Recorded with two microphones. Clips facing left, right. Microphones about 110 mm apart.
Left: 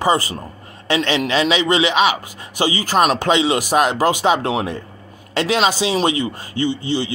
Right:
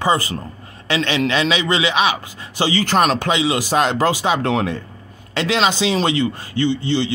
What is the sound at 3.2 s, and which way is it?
Speech, 25° left (ahead or behind).